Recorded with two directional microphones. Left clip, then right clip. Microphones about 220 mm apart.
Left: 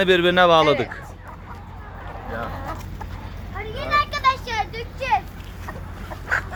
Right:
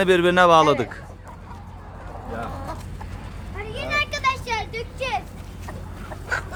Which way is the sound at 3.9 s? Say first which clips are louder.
Left 3 dB; 30° right (ahead or behind).